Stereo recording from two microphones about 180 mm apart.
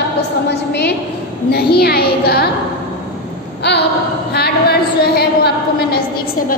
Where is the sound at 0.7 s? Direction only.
65° left (ahead or behind).